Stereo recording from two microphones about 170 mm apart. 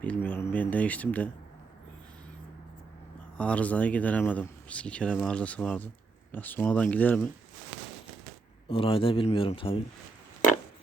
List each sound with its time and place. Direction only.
0.0 s speech: 10° left (ahead or behind)
3.3 s speech: 5° left (ahead or behind)
8.6 s a man's voice: 30° left (ahead or behind)